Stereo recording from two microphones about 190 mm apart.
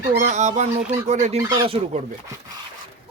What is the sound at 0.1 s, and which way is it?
Speech, 40° right (ahead or behind).